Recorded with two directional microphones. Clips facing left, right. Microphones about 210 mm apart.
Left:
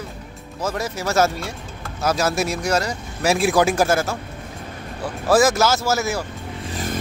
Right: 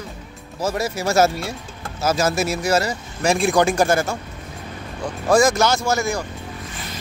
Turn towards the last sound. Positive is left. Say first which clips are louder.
# left 8 dB
turn(degrees=45)  # may be behind; listen again after turning